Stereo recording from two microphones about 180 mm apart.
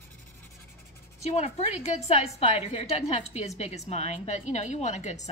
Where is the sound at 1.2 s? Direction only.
35° left (ahead or behind).